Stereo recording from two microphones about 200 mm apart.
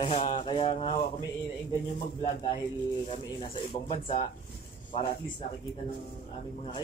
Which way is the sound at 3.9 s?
30° left (ahead or behind).